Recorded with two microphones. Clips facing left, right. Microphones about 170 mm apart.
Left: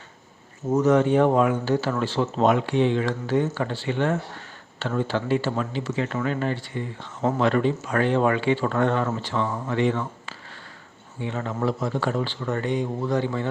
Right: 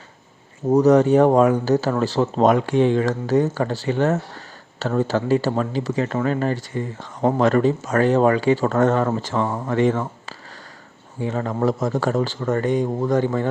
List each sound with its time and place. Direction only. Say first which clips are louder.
0.7 s speech: right 5 dB; 35° right (ahead or behind)